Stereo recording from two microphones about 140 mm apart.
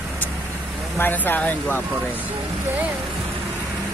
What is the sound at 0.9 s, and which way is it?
Speech, 15° left (ahead or behind).